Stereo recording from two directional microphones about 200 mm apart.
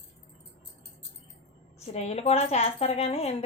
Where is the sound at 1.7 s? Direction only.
30° left (ahead or behind).